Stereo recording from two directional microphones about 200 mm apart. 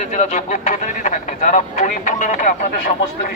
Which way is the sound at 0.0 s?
35° left (ahead or behind).